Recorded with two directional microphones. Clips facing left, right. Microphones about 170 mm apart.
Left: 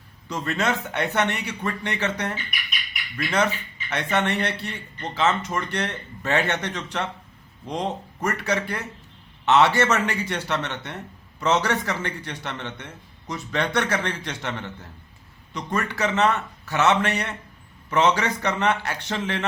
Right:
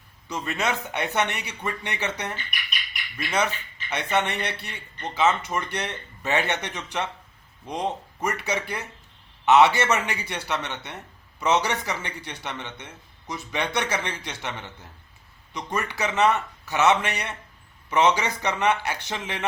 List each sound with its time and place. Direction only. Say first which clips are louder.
0.3 s a man's voice: left 2 dB; 15° right (ahead or behind)
3.3 s a man's voice: left 2 dB; 15° right (ahead or behind)
15.5 s a man's voice: left 2 dB; 15° right (ahead or behind)